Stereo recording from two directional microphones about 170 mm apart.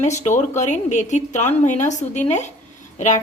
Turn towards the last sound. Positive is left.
turn(degrees=45)  # may be behind; listen again after turning